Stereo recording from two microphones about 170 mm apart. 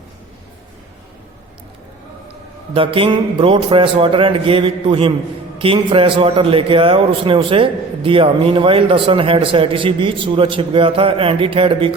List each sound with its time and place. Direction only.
2.7 s a man's voice: 30° right (ahead or behind)